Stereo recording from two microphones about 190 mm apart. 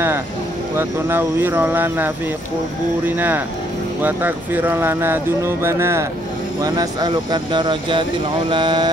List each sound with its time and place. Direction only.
0.7 s speech: 10° right (ahead or behind)